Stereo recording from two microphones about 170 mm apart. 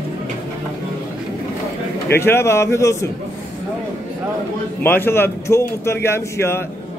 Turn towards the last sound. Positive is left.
turn(degrees=15)  # may be behind; listen again after turning